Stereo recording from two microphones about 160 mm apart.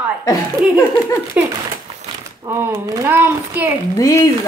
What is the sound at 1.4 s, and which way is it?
Speech, 10° right (ahead or behind).